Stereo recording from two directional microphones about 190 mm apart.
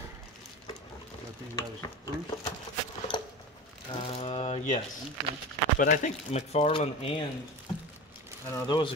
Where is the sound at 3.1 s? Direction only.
25° left (ahead or behind).